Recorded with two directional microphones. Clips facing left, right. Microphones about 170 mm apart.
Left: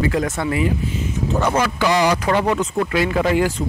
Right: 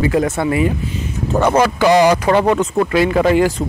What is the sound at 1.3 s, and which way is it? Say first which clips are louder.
Speech: right 6 dB; 55° right (ahead or behind).